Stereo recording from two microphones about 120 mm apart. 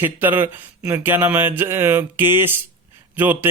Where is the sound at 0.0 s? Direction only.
15° right (ahead or behind).